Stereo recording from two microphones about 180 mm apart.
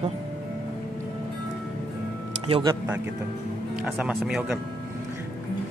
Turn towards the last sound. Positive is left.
turn(degrees=-5)  # may be behind; listen again after turning